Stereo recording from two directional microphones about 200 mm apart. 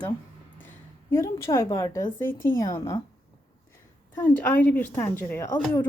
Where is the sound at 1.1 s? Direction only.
15° left (ahead or behind).